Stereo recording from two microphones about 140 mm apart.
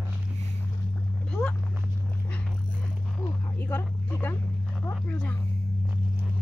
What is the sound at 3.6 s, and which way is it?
Vehicle, 10° left (ahead or behind).